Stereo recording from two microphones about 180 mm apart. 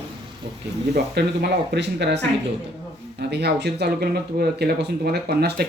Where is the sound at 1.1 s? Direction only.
65° right (ahead or behind).